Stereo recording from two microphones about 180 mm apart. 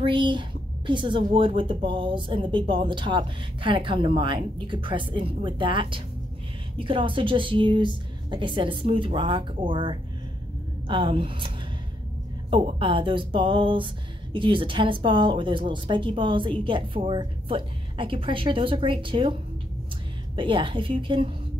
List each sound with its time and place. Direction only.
0.0 s speech: 25° right (ahead or behind)
20.3 s speech: 25° right (ahead or behind)